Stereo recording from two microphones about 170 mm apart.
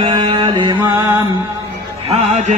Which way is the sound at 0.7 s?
15° right (ahead or behind).